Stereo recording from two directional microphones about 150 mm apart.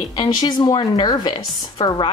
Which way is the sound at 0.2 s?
25° left (ahead or behind).